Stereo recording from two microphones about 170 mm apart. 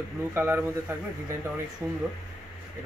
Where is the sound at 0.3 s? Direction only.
15° right (ahead or behind).